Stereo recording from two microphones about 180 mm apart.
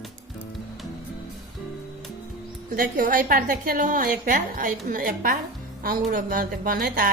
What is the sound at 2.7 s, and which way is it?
Speech, 50° right (ahead or behind).